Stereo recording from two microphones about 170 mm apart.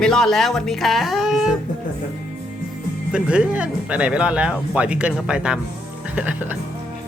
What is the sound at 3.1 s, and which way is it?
Speech, 5° right (ahead or behind).